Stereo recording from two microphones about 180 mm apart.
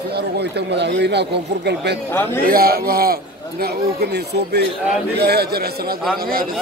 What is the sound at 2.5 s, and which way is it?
Speech, 55° right (ahead or behind).